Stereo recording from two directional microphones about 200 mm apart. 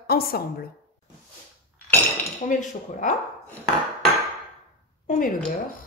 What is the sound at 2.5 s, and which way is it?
Speech, 40° left (ahead or behind).